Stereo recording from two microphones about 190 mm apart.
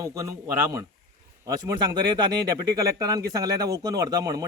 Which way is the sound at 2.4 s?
20° right (ahead or behind).